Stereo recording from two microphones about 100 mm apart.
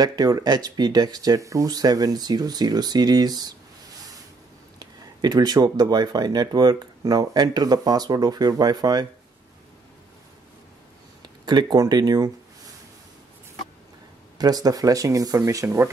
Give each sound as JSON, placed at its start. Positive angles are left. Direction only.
{"t": 0.0, "sound": "speech", "side_deg": -40}
{"t": 4.7, "sound": "speech", "side_deg": -45}
{"t": 11.2, "sound": "speech", "side_deg": -45}
{"t": 14.4, "sound": "speech", "side_deg": -40}